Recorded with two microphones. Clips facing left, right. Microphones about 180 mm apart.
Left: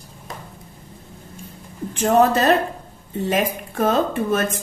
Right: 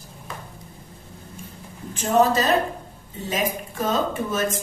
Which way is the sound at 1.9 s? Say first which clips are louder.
Left 3 dB; 60° left (ahead or behind).